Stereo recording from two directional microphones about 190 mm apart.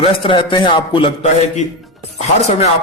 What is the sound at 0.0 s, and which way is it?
A man's voice, 25° left (ahead or behind).